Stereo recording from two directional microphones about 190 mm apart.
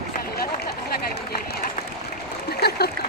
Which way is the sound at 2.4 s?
55° left (ahead or behind).